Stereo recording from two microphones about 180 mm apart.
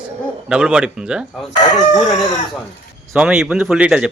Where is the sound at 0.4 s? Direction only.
5° right (ahead or behind).